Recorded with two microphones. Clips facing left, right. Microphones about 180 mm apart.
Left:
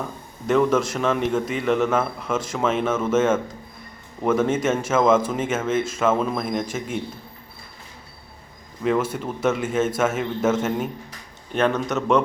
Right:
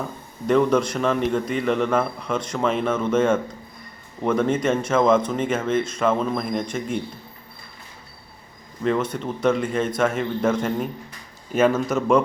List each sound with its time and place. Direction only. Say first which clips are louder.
0.4 s a man's voice: right 1 dB; centre (ahead or behind)
8.8 s a man's voice: left 1 dB; 5° left (ahead or behind)